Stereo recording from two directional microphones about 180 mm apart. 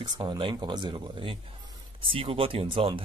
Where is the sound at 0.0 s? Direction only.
25° right (ahead or behind).